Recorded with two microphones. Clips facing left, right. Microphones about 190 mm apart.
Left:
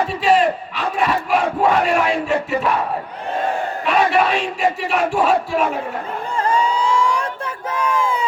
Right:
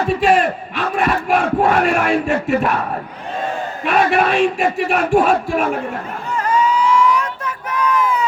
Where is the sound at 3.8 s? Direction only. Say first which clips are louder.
Right 1 dB; 55° right (ahead or behind).